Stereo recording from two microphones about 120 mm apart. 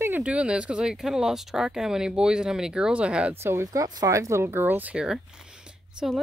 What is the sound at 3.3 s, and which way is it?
Speech, 20° right (ahead or behind).